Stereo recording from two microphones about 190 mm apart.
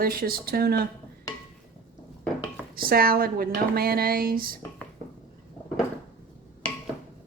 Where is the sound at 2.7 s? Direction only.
50° right (ahead or behind).